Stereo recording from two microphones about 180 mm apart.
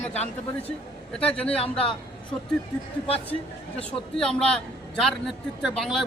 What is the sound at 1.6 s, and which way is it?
Speech, 30° left (ahead or behind).